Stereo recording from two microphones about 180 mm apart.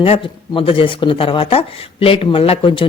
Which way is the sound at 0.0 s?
30° left (ahead or behind).